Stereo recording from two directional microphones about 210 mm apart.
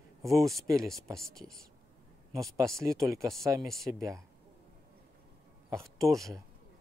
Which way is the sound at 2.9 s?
Centre (ahead or behind).